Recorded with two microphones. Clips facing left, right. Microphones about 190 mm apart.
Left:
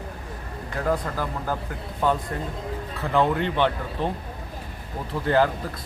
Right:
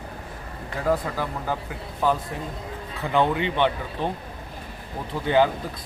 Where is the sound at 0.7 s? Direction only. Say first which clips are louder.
Right 1 dB; 5° right (ahead or behind).